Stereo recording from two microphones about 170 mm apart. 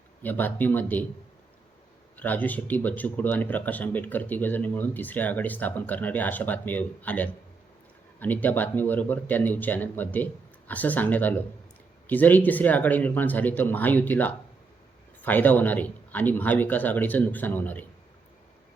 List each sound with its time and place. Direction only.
0.2 s speech: 10° left (ahead or behind)
2.1 s speech: 10° left (ahead or behind)